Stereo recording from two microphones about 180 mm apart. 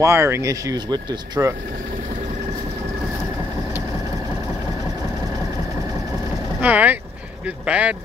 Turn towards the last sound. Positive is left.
turn(degrees=-5)  # may be behind; listen again after turning